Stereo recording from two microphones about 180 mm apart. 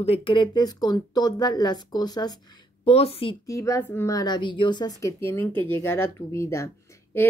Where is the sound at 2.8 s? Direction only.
35° left (ahead or behind).